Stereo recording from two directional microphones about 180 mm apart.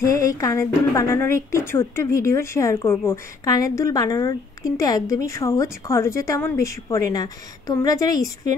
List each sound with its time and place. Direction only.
0.0 s a woman's voice: 20° left (ahead or behind)